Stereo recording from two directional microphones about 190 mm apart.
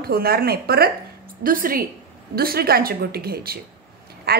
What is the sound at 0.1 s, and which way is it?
A woman's voice, 55° right (ahead or behind).